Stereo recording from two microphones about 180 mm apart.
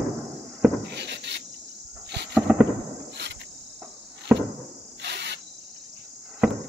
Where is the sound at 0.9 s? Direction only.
70° right (ahead or behind).